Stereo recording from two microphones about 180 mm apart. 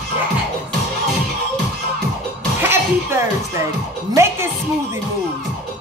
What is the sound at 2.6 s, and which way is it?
Music, 15° right (ahead or behind).